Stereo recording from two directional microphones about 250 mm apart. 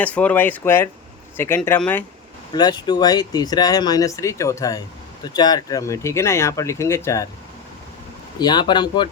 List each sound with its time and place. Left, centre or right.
0.0 s speech: centre
8.4 s speech: centre